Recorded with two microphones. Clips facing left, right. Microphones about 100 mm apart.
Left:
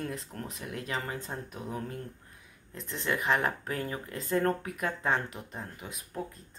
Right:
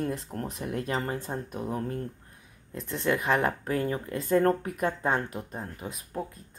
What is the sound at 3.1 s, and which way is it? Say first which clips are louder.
Speech: right 3 dB; 35° right (ahead or behind).